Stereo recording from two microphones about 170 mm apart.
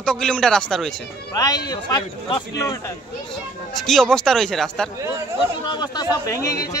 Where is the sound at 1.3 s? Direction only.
20° left (ahead or behind).